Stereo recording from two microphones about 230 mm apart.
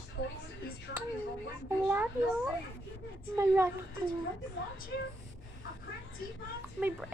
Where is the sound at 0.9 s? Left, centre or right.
Left.